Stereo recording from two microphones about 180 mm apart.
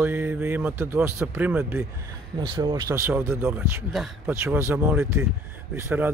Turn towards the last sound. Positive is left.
turn(degrees=-10)  # may be behind; listen again after turning